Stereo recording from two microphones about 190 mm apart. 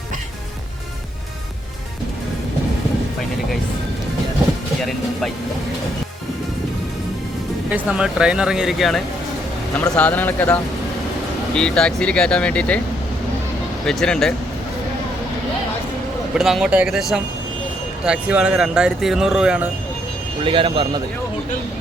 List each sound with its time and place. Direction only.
4.8 s speech: centre (ahead or behind)
7.7 s speech: 5° right (ahead or behind)
13.8 s speech: 5° left (ahead or behind)
16.4 s speech: centre (ahead or behind)
20.4 s speech: 25° right (ahead or behind)